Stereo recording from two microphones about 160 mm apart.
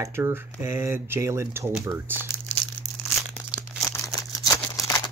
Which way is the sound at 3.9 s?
20° left (ahead or behind).